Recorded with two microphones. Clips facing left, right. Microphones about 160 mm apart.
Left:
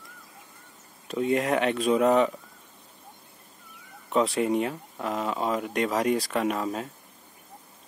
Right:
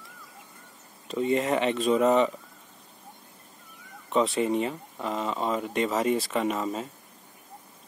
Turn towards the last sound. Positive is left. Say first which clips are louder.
# left 1 dB
turn(degrees=0)  # may be behind; listen again after turning